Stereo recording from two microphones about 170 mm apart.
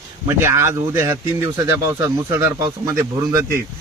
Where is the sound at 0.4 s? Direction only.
15° right (ahead or behind).